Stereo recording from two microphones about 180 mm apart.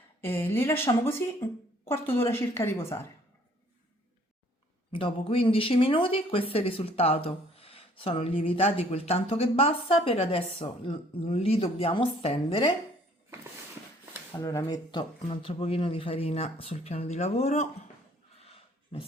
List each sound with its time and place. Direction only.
0.2 s speech: 10° left (ahead or behind)
4.9 s speech: 30° left (ahead or behind)
14.3 s speech: 20° left (ahead or behind); by 17.7 s 40° left (ahead or behind)
18.4 s a sound: 30° left (ahead or behind)